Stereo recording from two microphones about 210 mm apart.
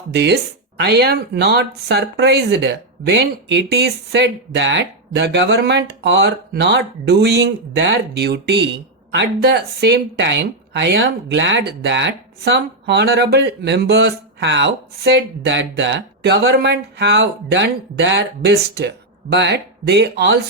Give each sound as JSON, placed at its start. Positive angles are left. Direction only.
{"t": 0.1, "sound": "speech", "side_deg": -50}